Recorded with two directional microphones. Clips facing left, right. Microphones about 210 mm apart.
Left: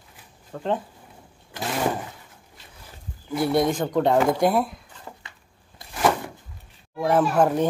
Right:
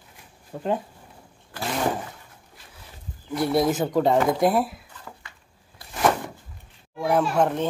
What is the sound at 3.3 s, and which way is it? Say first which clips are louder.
Speech: even; centre (ahead or behind).